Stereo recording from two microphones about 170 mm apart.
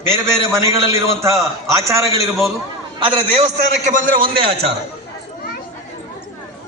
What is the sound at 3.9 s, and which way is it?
Speech, 50° right (ahead or behind).